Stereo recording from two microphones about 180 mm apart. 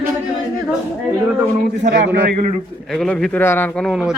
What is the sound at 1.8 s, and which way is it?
Speech, 70° right (ahead or behind).